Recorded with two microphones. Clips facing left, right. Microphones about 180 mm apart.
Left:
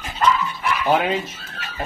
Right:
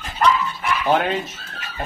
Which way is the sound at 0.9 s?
5° left (ahead or behind).